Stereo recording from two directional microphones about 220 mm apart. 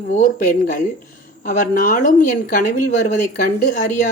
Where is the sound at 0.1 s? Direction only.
35° left (ahead or behind).